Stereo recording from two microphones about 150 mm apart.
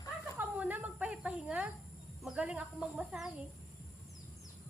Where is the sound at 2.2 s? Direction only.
5° right (ahead or behind).